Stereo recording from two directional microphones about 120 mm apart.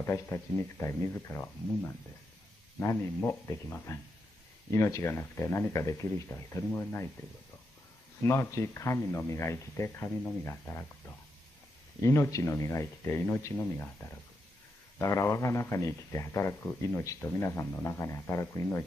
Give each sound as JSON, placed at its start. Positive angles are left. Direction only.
{"t": 0.0, "sound": "speech", "side_deg": 20}
{"t": 8.2, "sound": "speech", "side_deg": 25}
{"t": 15.0, "sound": "speech", "side_deg": 25}